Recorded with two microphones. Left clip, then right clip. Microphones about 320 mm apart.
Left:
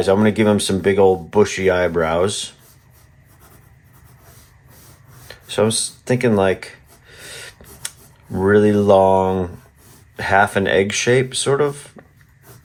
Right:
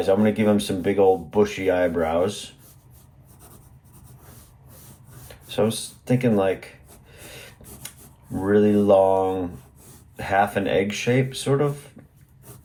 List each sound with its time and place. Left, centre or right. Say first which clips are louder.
0.0 s speech: left 5 dB; left
5.5 s speech: left 5 dB; left
7.1 s rub: left 7 dB; left
8.4 s speech: left 5 dB; left